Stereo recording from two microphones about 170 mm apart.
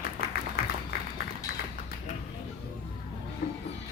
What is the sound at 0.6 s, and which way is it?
Music, 60° left (ahead or behind).